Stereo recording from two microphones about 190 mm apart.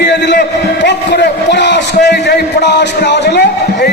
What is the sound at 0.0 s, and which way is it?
A man's voice, 60° left (ahead or behind).